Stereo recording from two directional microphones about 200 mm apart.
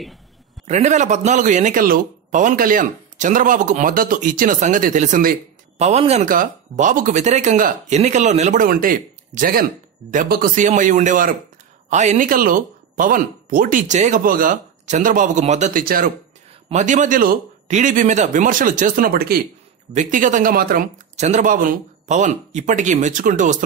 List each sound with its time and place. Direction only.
0.7 s speech: 35° right (ahead or behind)
19.9 s speech: 40° right (ahead or behind)